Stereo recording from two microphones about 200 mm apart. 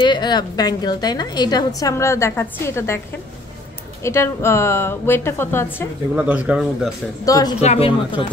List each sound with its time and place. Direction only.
0.0 s a woman's voice: 20° left (ahead or behind)
4.0 s a woman's voice: 15° left (ahead or behind)
6.1 s speech: 5° right (ahead or behind)
7.2 s a woman's voice: 20° left (ahead or behind)
7.6 s a woman's voice: 30° left (ahead or behind)